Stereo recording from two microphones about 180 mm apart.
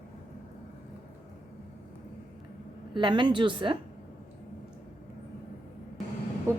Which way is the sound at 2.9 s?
25° right (ahead or behind).